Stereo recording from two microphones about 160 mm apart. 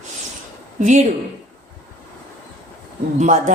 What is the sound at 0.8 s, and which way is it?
Speech, 50° right (ahead or behind).